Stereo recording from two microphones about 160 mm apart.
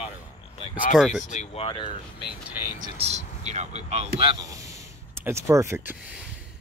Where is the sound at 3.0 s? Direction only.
45° right (ahead or behind).